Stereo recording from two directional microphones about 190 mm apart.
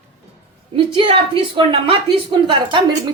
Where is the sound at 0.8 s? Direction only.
30° right (ahead or behind).